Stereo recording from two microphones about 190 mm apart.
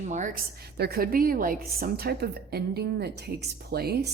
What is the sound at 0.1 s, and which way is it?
Speech, 40° right (ahead or behind).